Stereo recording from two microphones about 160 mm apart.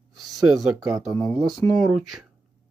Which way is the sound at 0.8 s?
25° right (ahead or behind).